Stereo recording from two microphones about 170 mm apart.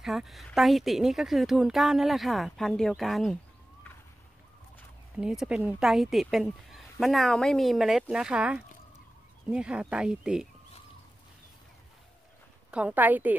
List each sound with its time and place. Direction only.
0.0 s speech: centre (ahead or behind)
5.2 s speech: 5° right (ahead or behind)
12.7 s a woman's voice: 10° right (ahead or behind)